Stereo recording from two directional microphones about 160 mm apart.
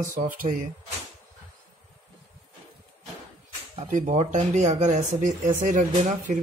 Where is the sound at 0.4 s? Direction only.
60° right (ahead or behind).